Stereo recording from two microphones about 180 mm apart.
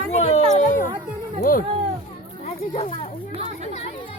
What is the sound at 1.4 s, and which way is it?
Speech, 50° left (ahead or behind).